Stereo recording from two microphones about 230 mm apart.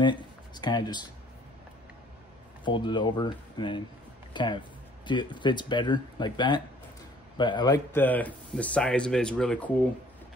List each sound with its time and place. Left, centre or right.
0.0 s speech: centre
2.6 s speech: centre